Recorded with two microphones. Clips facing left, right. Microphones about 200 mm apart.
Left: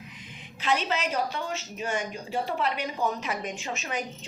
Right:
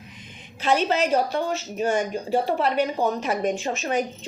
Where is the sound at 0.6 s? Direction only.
45° right (ahead or behind).